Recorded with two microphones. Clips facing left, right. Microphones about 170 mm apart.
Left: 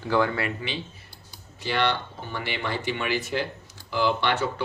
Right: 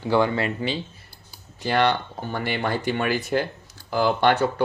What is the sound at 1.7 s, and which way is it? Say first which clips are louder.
Speech: right 4 dB; 45° right (ahead or behind).